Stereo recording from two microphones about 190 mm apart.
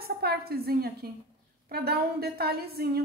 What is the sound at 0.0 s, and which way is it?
A woman's voice, 55° right (ahead or behind).